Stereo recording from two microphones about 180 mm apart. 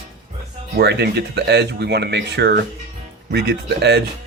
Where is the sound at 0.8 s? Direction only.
65° right (ahead or behind).